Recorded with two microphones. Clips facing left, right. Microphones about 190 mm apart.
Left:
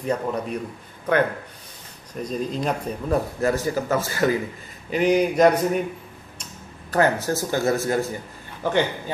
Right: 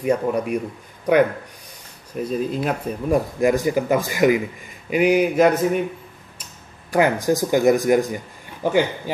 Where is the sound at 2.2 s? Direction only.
5° right (ahead or behind).